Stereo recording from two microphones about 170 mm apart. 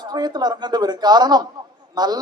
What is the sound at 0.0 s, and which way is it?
Speech, 25° right (ahead or behind).